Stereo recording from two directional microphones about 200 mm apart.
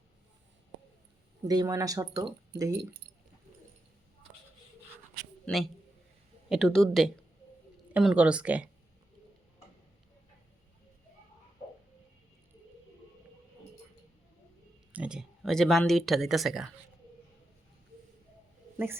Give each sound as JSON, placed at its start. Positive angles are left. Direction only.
{"t": 1.5, "sound": "speech", "side_deg": -15}
{"t": 5.5, "sound": "speech", "side_deg": 0}
{"t": 14.9, "sound": "speech", "side_deg": -5}